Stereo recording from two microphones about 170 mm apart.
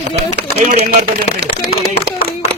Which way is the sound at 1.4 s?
70° right (ahead or behind).